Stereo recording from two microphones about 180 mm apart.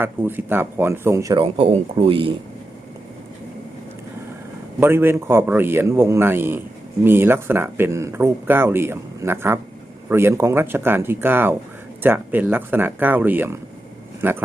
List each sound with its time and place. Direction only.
0.0 s speech: 10° right (ahead or behind)
1.4 s speech: 30° right (ahead or behind)
4.8 s speech: 15° right (ahead or behind)